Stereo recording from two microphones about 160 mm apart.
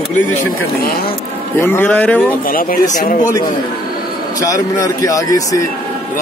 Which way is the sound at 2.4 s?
60° left (ahead or behind).